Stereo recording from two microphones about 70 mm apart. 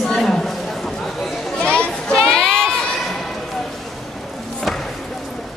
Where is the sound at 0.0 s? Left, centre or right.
Centre.